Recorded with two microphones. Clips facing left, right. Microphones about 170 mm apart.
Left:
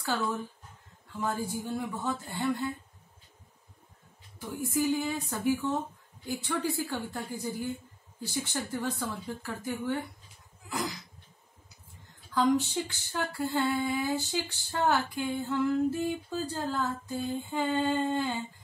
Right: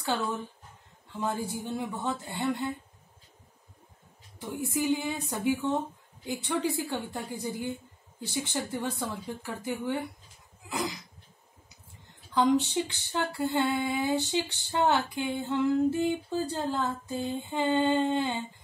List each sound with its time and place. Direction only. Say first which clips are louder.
0.0 s female singing: right 1 dB; 20° right (ahead or behind)
4.7 s female singing: even; 20° right (ahead or behind)
9.0 s a woman's voice: right 1 dB; 20° right (ahead or behind)
12.7 s female singing: right 3 dB; 20° right (ahead or behind)